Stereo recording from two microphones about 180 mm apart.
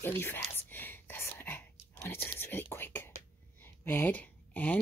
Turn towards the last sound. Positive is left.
turn(degrees=10)  # may be behind; listen again after turning